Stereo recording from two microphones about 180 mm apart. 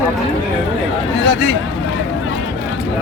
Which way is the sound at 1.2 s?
75° left (ahead or behind).